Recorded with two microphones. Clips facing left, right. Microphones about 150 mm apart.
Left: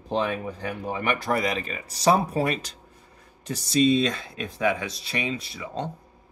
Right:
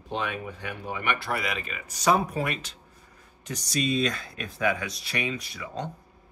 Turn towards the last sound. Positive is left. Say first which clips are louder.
# left 3 dB
turn(degrees=30)  # may be behind; listen again after turning